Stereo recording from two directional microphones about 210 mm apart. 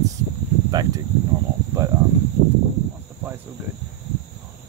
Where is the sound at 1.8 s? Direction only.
15° right (ahead or behind).